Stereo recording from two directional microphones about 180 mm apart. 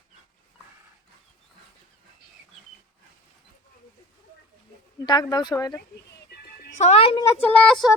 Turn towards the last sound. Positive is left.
turn(degrees=5)  # may be behind; listen again after turning